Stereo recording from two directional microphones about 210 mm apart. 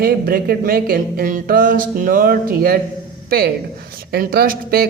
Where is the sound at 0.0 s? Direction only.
45° right (ahead or behind).